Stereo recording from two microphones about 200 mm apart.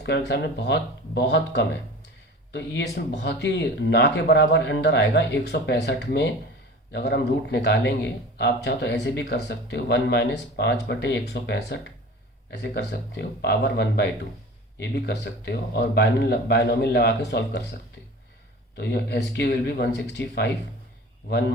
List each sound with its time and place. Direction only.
0.0 s speech: 60° left (ahead or behind)
18.8 s speech: 55° left (ahead or behind)